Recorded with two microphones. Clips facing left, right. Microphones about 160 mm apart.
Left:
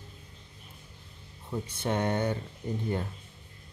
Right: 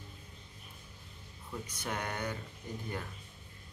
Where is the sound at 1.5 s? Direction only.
25° left (ahead or behind).